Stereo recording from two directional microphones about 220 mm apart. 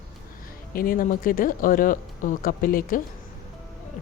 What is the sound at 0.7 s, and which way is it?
Speech, 40° left (ahead or behind).